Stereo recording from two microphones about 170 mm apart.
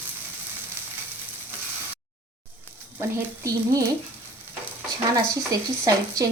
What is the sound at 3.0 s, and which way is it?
Frying, 15° right (ahead or behind).